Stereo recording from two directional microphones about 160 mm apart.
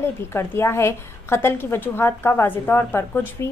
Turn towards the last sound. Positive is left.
turn(degrees=15)  # may be behind; listen again after turning